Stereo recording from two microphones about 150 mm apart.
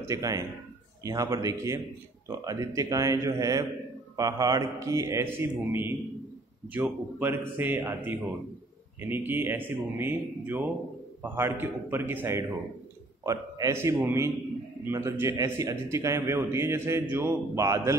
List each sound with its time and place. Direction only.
0.0 s a man's voice: 20° right (ahead or behind)